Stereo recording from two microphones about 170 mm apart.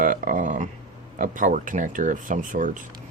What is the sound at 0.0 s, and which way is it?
Speech, 50° right (ahead or behind).